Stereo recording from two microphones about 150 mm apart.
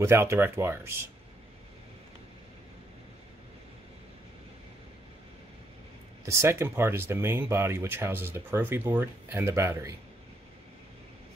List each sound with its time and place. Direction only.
0.0 s speech: 20° right (ahead or behind)
6.2 s speech: 20° right (ahead or behind)